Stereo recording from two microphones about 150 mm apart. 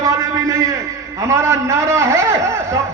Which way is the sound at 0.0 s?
20° right (ahead or behind).